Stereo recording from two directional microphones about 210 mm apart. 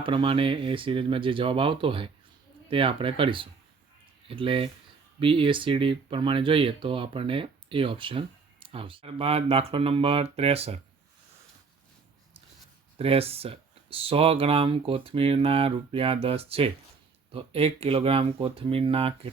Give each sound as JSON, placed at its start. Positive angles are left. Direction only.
{"t": 0.0, "sound": "speech", "side_deg": -25}
{"t": 13.0, "sound": "speech", "side_deg": -25}